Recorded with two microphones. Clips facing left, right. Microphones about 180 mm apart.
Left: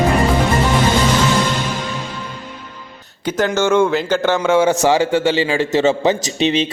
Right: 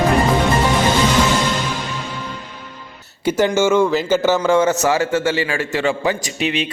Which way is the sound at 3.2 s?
10° right (ahead or behind).